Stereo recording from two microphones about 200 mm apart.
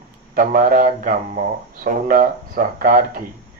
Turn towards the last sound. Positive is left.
turn(degrees=-45)  # may be behind; listen again after turning